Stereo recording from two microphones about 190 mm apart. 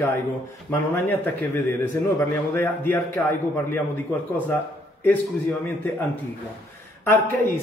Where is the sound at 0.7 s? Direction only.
10° left (ahead or behind).